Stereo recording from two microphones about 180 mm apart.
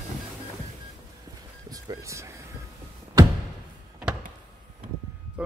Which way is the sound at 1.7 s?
15° right (ahead or behind).